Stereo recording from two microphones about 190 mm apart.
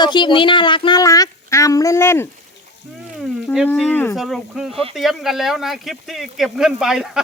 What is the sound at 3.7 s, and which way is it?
Speech, 10° left (ahead or behind).